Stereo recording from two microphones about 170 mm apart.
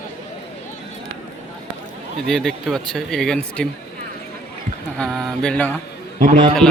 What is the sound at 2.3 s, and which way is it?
Speech, centre (ahead or behind).